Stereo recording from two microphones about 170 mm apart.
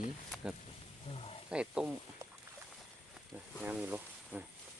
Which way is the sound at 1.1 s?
35° left (ahead or behind).